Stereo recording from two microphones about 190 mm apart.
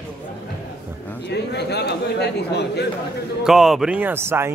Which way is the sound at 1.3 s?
60° left (ahead or behind).